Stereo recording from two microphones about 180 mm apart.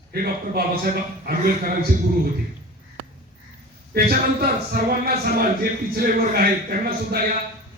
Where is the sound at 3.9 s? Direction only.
55° right (ahead or behind).